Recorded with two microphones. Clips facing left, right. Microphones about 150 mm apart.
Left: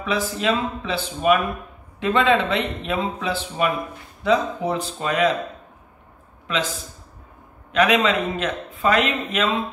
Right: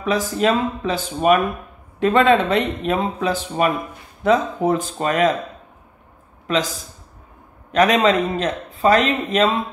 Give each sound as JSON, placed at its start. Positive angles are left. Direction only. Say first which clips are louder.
{"t": 0.0, "sound": "speech", "louder": "right 4 dB", "side_deg": -45}
{"t": 6.4, "sound": "a man's voice", "louder": "right 4 dB", "side_deg": -40}
{"t": 7.7, "sound": "a man's voice", "louder": "right 3 dB", "side_deg": -40}